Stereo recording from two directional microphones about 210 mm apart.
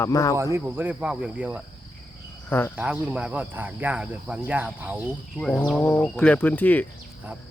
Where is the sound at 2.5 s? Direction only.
10° left (ahead or behind).